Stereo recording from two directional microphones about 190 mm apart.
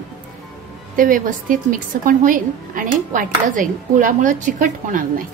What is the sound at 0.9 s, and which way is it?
A woman's voice, 45° right (ahead or behind).